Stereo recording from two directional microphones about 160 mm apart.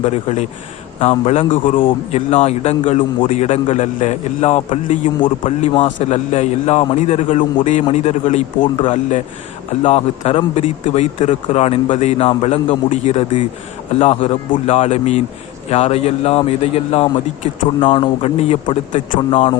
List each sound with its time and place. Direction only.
0.0 s a man's voice: 45° left (ahead or behind)
5.2 s a man's voice: 35° left (ahead or behind)
8.6 s a man's voice: 30° left (ahead or behind)
8.9 s a man's voice: 50° left (ahead or behind)
18.9 s a man's voice: 50° left (ahead or behind)
19.3 s a man's voice: 35° left (ahead or behind)